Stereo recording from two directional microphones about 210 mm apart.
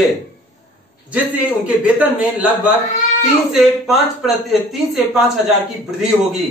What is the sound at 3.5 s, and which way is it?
Speech, centre (ahead or behind).